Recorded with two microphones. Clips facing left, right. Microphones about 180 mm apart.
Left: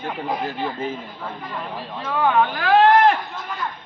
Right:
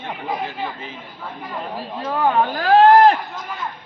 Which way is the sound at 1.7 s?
40° right (ahead or behind).